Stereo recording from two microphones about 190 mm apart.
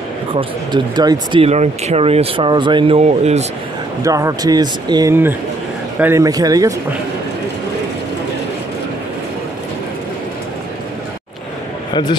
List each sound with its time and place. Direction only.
0.3 s speech: 25° right (ahead or behind)
4.0 s speech: 15° right (ahead or behind)
11.9 s speech: 25° left (ahead or behind)